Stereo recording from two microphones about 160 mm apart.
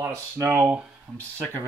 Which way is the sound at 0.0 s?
15° right (ahead or behind).